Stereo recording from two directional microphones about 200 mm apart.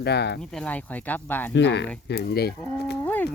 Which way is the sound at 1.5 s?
60° left (ahead or behind).